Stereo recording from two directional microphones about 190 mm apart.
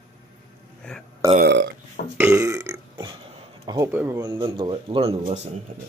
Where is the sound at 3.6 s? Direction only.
20° right (ahead or behind).